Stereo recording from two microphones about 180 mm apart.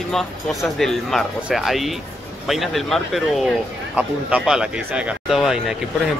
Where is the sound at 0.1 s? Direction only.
Centre (ahead or behind).